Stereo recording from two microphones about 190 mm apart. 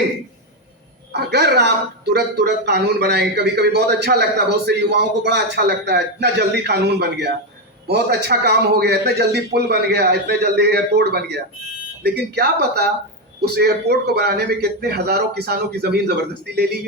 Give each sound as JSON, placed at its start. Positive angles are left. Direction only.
{"t": 1.1, "sound": "a man's voice", "side_deg": -60}